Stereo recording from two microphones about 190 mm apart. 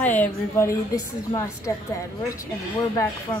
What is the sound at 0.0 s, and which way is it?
A woman's voice, 10° left (ahead or behind).